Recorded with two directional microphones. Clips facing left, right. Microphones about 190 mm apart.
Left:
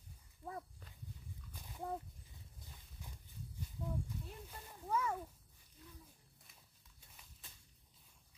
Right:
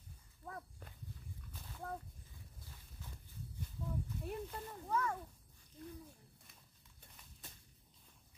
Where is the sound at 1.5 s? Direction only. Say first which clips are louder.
Left 3 dB; 15° left (ahead or behind).